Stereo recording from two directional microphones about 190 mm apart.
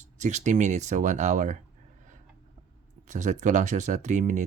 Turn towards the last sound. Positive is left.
turn(degrees=-40)  # may be behind; listen again after turning